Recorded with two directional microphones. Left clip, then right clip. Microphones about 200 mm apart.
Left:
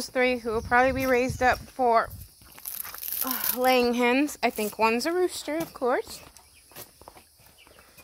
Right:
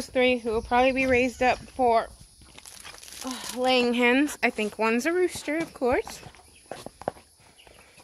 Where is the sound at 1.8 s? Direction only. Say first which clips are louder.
Left 1 dB; 5° left (ahead or behind).